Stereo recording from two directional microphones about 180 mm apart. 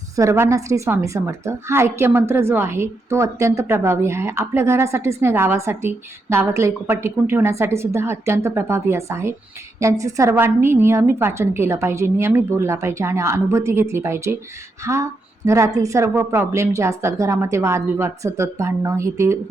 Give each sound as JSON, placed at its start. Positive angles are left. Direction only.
{"t": 0.2, "sound": "a woman's voice", "side_deg": -15}